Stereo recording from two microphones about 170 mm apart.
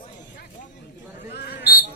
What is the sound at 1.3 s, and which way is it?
Basketball bounce, 70° left (ahead or behind).